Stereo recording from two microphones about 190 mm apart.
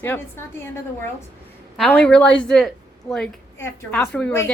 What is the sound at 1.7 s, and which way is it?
A woman's voice, 5° left (ahead or behind).